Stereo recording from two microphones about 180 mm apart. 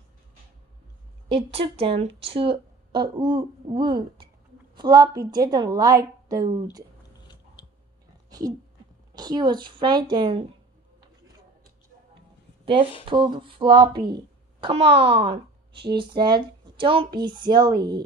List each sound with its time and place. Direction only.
1.3 s a woman's voice: 30° right (ahead or behind)
8.3 s a sound: 20° right (ahead or behind)
9.1 s a woman's voice: 25° right (ahead or behind)
13.1 s a woman's voice: 25° right (ahead or behind)